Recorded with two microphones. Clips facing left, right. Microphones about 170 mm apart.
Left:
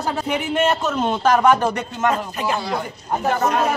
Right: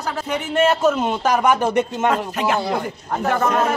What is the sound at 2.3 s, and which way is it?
Speech, 75° right (ahead or behind).